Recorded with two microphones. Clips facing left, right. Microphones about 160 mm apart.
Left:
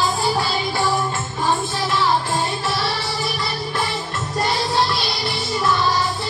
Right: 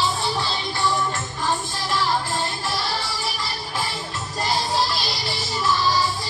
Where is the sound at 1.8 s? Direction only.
80° left.